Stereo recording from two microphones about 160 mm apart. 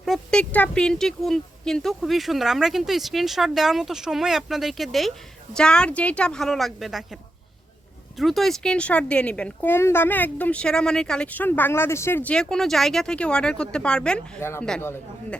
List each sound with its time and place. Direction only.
0.0 s speech: centre (ahead or behind)
8.2 s speech: centre (ahead or behind)